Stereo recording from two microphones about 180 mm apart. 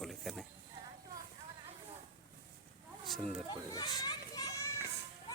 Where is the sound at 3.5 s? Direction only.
20° left (ahead or behind).